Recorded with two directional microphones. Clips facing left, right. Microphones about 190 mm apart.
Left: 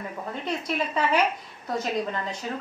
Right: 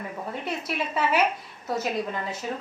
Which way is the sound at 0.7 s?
5° right (ahead or behind).